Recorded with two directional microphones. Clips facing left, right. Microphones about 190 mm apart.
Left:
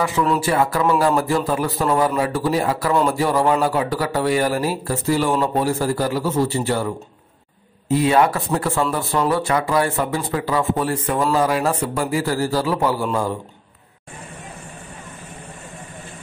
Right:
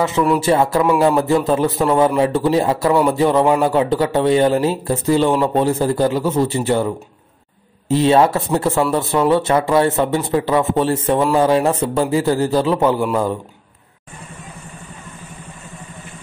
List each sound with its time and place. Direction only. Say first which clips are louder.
0.4 s speech: right 4 dB; 25° right (ahead or behind)
7.9 s speech: right 3 dB; 25° right (ahead or behind)